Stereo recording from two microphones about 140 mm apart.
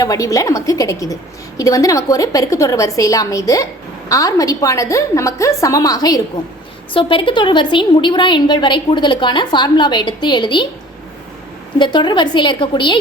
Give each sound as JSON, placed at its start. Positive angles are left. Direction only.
{"t": 0.0, "sound": "a woman's voice", "side_deg": 25}
{"t": 6.9, "sound": "a woman's voice", "side_deg": 40}
{"t": 11.8, "sound": "a woman's voice", "side_deg": 30}